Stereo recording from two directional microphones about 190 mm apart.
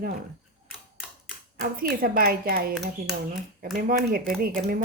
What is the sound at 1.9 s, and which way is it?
Speech, 50° right (ahead or behind).